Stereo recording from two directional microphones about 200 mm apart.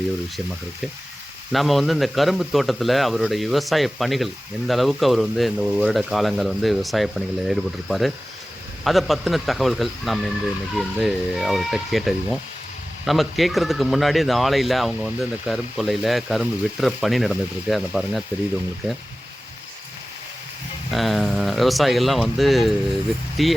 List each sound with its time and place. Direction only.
1.5 s a man's voice: centre (ahead or behind)
20.9 s a man's voice: centre (ahead or behind)